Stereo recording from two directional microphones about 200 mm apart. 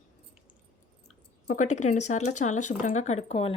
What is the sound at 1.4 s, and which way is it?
Speech, 35° left (ahead or behind).